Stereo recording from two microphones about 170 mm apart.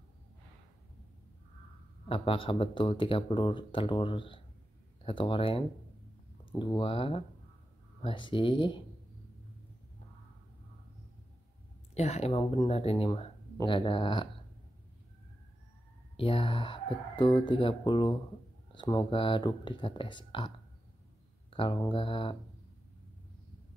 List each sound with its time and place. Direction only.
2.0 s speech: 30° left (ahead or behind)
6.6 s speech: 30° left (ahead or behind)
11.9 s speech: 40° left (ahead or behind)
16.2 s speech: 35° left (ahead or behind)